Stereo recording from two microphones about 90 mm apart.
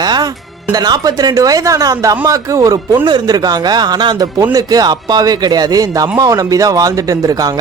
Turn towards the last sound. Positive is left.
turn(degrees=-45)  # may be behind; listen again after turning